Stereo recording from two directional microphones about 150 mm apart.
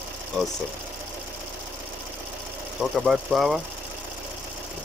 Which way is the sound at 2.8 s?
Centre (ahead or behind).